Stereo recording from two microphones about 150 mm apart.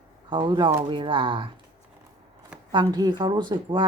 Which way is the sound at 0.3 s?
30° right (ahead or behind).